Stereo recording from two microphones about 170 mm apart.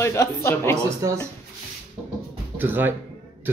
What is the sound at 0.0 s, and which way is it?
Speech, 15° left (ahead or behind).